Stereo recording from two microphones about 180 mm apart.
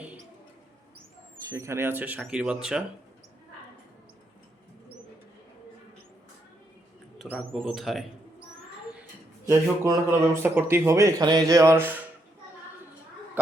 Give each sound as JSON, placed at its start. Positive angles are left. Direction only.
{"t": 1.5, "sound": "speech", "side_deg": -15}
{"t": 7.2, "sound": "bird", "side_deg": 0}
{"t": 7.5, "sound": "speech", "side_deg": 0}
{"t": 9.5, "sound": "speech", "side_deg": -15}